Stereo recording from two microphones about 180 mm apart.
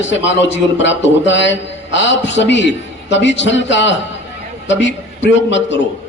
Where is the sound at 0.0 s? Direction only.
90° left.